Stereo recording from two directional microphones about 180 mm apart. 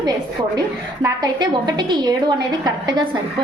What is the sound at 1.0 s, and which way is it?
A woman's voice, 25° right (ahead or behind).